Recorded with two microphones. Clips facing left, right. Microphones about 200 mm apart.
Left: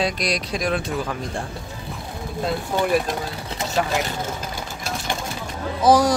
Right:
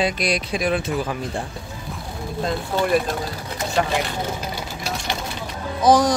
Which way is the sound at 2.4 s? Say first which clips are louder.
Even; 5° left (ahead or behind).